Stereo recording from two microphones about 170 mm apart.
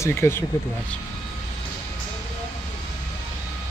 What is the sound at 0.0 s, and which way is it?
Speech, 15° left (ahead or behind).